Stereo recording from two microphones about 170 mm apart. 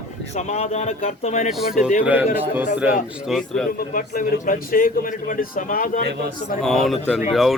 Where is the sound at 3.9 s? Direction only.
55° left (ahead or behind).